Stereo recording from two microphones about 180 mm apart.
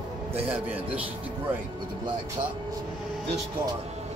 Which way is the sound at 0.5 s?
10° right (ahead or behind).